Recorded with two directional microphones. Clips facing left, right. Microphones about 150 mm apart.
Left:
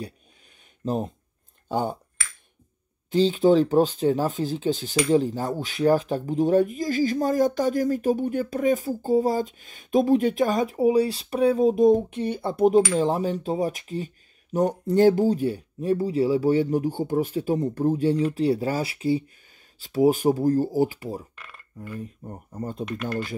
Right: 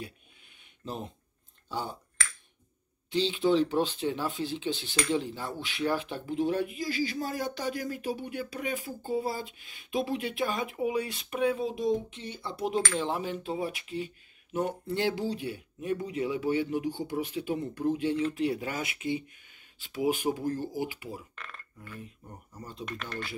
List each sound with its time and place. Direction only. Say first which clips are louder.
0.8 s speech: left 11 dB; 45° left (ahead or behind)
3.1 s speech: left 7 dB; 45° left (ahead or behind)
12.9 s speech: left 8 dB; 40° left (ahead or behind)